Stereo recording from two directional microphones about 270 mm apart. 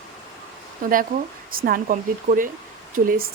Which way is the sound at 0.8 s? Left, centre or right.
Right.